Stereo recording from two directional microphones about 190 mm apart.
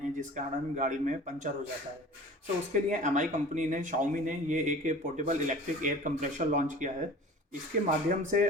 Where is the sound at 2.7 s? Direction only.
40° right (ahead or behind).